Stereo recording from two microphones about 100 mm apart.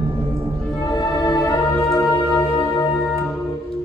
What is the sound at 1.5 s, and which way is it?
Music, 30° left (ahead or behind).